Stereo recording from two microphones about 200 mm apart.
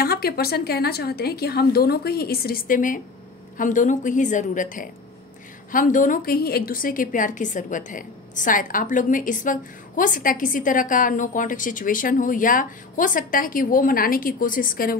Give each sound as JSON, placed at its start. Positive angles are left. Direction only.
{"t": 0.0, "sound": "a woman's voice", "side_deg": 50}